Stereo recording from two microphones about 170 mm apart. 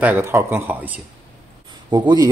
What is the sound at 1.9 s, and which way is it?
Speech, 25° right (ahead or behind).